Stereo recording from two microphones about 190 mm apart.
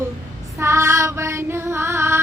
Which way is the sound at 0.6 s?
15° right (ahead or behind).